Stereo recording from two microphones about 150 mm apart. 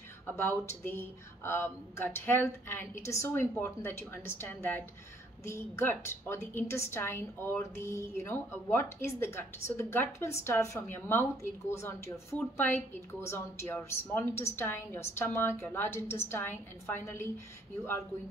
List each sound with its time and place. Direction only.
0.4 s a woman's voice: 15° left (ahead or behind)